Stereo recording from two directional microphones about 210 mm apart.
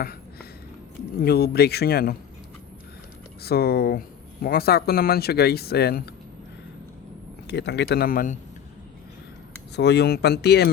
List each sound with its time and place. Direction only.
0.0 s a sound: 45° left (ahead or behind)
1.2 s speech: 50° left (ahead or behind)
3.4 s speech: 50° left (ahead or behind)
7.4 s speech: 55° left (ahead or behind)
9.7 s speech: 55° left (ahead or behind)